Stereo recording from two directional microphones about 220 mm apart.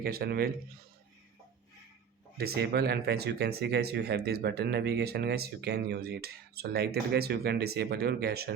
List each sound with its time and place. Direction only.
0.0 s speech: 45° right (ahead or behind)
2.4 s speech: 45° right (ahead or behind)